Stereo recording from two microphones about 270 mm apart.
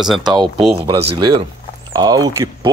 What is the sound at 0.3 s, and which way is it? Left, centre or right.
Speech, centre.